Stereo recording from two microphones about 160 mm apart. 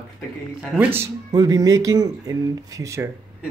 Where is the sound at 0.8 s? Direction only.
15° right (ahead or behind).